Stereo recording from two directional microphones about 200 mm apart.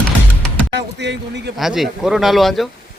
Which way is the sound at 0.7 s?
60° right (ahead or behind).